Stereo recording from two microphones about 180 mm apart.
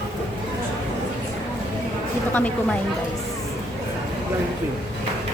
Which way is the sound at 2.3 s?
10° left (ahead or behind).